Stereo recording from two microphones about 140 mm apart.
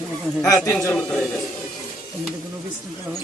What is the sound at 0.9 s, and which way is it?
Speech, 5° left (ahead or behind).